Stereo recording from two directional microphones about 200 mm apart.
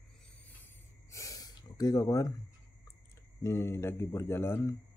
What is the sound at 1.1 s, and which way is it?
Snort, 15° left (ahead or behind).